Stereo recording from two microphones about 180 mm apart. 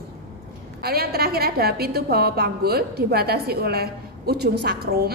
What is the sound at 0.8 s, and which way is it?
A woman's voice, 60° right (ahead or behind).